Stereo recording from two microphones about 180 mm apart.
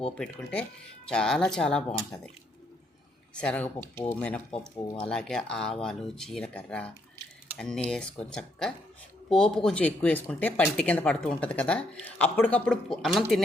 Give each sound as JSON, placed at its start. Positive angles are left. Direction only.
{"t": 1.0, "sound": "speech", "side_deg": 5}
{"t": 3.3, "sound": "speech", "side_deg": 5}
{"t": 4.7, "sound": "speech", "side_deg": 20}
{"t": 4.9, "sound": "speech", "side_deg": 5}